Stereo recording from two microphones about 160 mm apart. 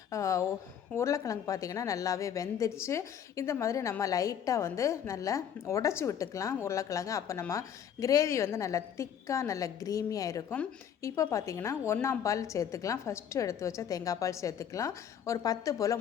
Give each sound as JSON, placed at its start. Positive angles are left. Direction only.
{"t": 0.1, "sound": "a woman's voice", "side_deg": 20}